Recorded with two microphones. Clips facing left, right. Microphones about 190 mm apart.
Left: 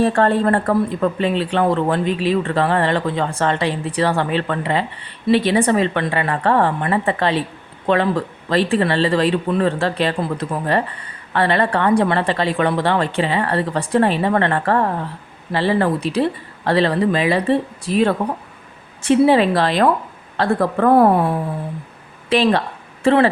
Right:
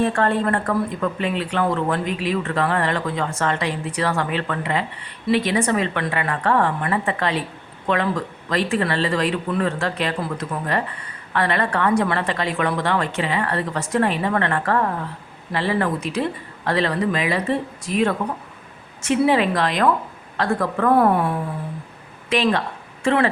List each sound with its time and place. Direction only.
0.0 s speech: 35° left (ahead or behind)